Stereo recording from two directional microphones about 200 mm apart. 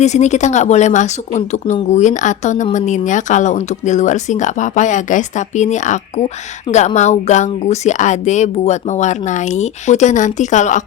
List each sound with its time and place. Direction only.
0.0 s speech: 35° left (ahead or behind)